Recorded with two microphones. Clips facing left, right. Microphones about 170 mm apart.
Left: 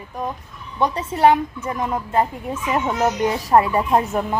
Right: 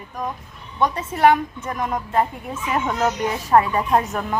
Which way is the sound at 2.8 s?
10° left (ahead or behind).